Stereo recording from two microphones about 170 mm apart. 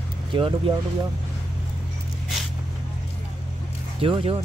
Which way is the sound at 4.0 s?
35° right (ahead or behind).